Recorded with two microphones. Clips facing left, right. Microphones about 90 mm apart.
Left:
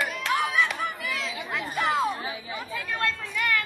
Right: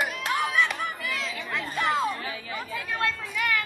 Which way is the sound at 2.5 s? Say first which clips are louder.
Right 2 dB; centre (ahead or behind).